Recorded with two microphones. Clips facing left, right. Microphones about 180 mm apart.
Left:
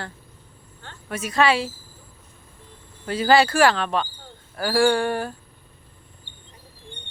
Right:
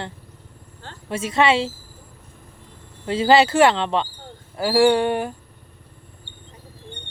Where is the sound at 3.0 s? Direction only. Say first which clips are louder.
Right 2 dB; 25° right (ahead or behind).